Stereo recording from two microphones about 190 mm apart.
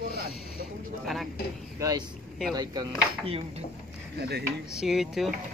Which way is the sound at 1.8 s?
20° right (ahead or behind).